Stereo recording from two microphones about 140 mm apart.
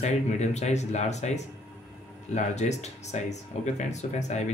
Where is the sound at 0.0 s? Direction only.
55° left (ahead or behind).